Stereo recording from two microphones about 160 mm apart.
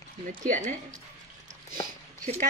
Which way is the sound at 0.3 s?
55° right (ahead or behind).